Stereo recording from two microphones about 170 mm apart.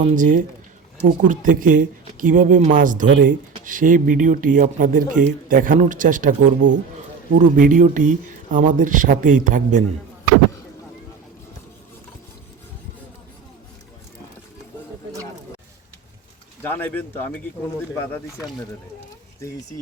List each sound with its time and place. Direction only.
0.0 s speech: 50° right (ahead or behind)
16.6 s speech: 10° left (ahead or behind)